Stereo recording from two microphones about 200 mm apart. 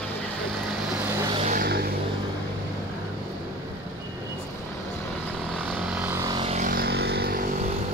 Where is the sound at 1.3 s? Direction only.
30° right (ahead or behind).